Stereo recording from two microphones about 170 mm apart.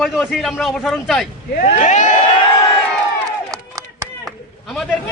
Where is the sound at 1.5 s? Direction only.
45° left (ahead or behind).